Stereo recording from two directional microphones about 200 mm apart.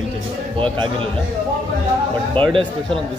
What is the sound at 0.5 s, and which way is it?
Speech, 25° right (ahead or behind).